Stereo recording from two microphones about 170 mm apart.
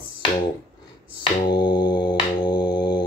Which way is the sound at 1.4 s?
25° left (ahead or behind).